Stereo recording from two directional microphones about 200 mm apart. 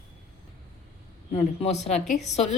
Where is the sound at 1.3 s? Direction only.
35° left (ahead or behind).